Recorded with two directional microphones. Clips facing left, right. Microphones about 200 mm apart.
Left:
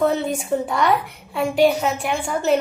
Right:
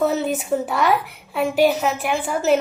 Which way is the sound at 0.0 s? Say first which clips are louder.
Even; 5° right (ahead or behind).